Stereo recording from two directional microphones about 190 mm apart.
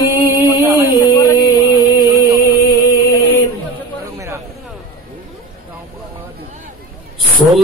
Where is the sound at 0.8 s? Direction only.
20° left (ahead or behind).